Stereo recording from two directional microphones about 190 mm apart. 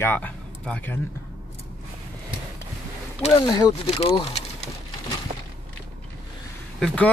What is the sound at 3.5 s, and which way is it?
Speech, 25° left (ahead or behind).